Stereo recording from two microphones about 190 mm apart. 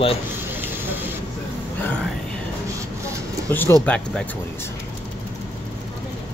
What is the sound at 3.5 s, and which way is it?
Speech, 10° left (ahead or behind).